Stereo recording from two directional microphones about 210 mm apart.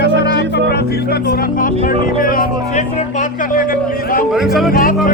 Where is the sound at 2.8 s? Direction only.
35° left (ahead or behind).